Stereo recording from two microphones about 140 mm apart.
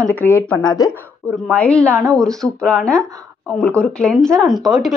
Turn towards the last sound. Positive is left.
turn(degrees=0)  # may be behind; listen again after turning